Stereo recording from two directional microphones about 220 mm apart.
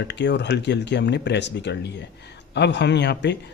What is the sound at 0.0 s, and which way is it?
Speech, 50° left (ahead or behind).